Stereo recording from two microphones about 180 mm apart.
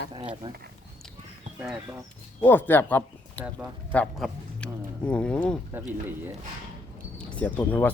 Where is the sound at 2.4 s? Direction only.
10° left (ahead or behind).